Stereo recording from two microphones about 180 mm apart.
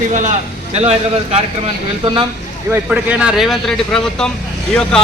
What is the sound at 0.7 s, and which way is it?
Speech, 35° right (ahead or behind).